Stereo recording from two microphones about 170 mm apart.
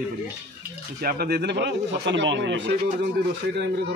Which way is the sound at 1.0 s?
65° right (ahead or behind).